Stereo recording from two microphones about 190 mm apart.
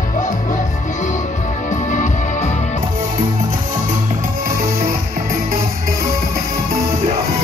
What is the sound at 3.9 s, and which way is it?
Music, 45° right (ahead or behind).